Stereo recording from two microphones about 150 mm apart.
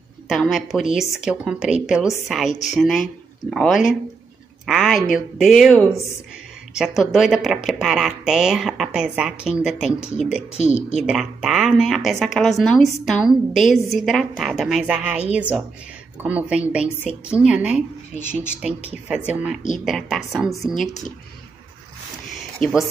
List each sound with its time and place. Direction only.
0.3 s speech: centre (ahead or behind)
10.5 s a woman's voice: 50° left (ahead or behind)
11.1 s speech: centre (ahead or behind)
22.6 s speech: centre (ahead or behind)